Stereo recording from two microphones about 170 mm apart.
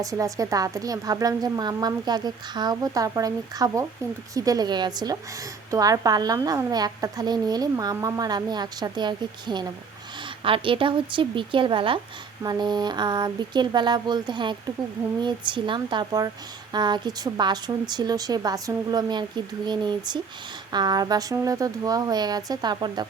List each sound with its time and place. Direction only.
0.0 s a woman's voice: 20° right (ahead or behind)